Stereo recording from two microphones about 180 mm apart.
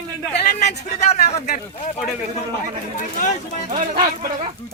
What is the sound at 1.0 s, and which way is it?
Speech, 35° left (ahead or behind).